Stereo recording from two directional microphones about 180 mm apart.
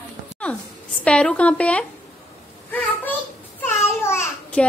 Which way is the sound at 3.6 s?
10° left (ahead or behind).